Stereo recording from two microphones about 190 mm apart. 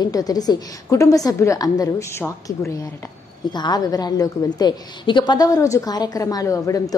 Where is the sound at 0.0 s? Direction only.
20° left (ahead or behind).